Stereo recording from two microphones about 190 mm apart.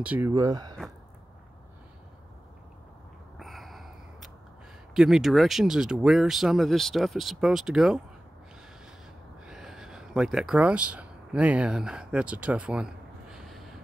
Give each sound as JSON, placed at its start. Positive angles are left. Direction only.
{"t": 0.0, "sound": "speech", "side_deg": -10}
{"t": 3.3, "sound": "a sound", "side_deg": 0}
{"t": 4.9, "sound": "speech", "side_deg": 0}
{"t": 9.5, "sound": "speech", "side_deg": 0}